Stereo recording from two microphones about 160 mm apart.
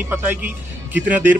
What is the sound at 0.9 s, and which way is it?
Speech, 10° right (ahead or behind).